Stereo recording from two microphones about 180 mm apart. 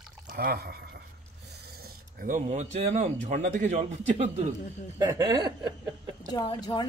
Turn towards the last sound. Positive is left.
turn(degrees=25)  # may be behind; listen again after turning